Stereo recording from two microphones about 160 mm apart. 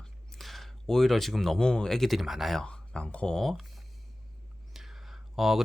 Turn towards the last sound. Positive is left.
turn(degrees=0)  # may be behind; listen again after turning